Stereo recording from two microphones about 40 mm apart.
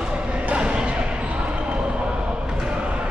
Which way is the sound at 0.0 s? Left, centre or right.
Right.